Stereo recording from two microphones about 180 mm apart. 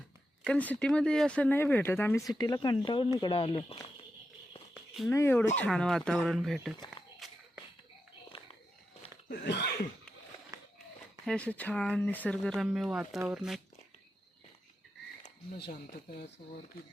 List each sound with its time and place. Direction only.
0.4 s speech: 10° left (ahead or behind); by 3.9 s 30° left (ahead or behind)
5.0 s speech: 15° left (ahead or behind)
8.3 s walk: 30° left (ahead or behind)
9.3 s throat clearing: 65° left (ahead or behind)
11.3 s speech: 5° left (ahead or behind)